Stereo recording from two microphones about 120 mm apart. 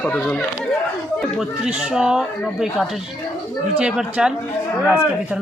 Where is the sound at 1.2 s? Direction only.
5° right (ahead or behind).